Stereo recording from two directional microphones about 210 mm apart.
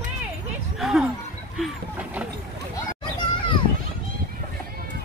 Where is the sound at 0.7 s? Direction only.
Centre (ahead or behind).